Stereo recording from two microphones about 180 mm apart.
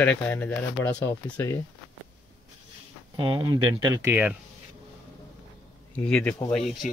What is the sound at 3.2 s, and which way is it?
Speech, 25° right (ahead or behind).